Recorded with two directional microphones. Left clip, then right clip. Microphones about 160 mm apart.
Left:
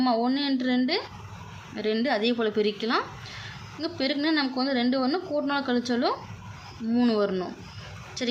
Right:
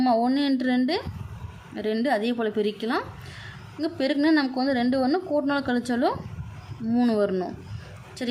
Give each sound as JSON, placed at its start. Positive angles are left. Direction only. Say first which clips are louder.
{"t": 0.0, "sound": "a woman's voice", "louder": "right 3 dB", "side_deg": -25}